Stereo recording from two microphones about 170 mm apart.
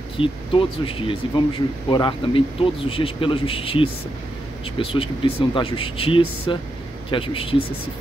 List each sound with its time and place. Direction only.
0.2 s a man's voice: 30° left (ahead or behind)